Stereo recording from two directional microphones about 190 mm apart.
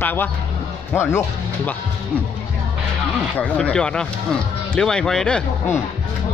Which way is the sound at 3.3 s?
5° left (ahead or behind).